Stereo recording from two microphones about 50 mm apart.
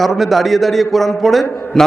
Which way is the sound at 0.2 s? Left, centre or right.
Centre.